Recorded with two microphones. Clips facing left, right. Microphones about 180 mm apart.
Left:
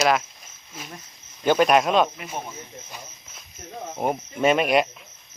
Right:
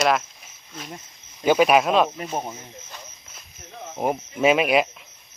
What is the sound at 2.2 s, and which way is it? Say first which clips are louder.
Speech: right 5 dB; 40° right (ahead or behind).